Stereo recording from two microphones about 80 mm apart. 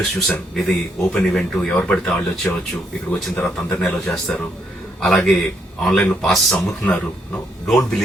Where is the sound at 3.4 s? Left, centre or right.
Centre.